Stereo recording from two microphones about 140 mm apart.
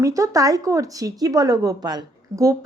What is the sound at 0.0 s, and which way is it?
Speech, 25° right (ahead or behind).